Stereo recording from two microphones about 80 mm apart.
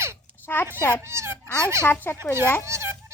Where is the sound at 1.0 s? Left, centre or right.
Right.